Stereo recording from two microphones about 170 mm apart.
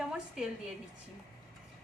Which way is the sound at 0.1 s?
5° right (ahead or behind).